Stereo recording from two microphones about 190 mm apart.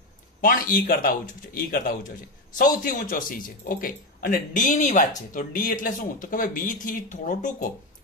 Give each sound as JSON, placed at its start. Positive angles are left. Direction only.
{"t": 0.4, "sound": "speech", "side_deg": 50}